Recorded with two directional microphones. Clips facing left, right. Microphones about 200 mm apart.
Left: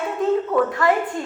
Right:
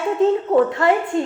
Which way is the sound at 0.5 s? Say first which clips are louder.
Right 4 dB; 25° right (ahead or behind).